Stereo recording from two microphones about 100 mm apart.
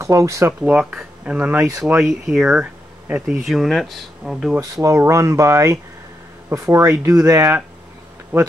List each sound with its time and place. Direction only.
0.0 s speech: 30° right (ahead or behind)
0.5 s speech: 15° right (ahead or behind)
3.5 s speech: centre (ahead or behind)
4.8 s speech: 30° right (ahead or behind)
8.3 s speech: 20° right (ahead or behind)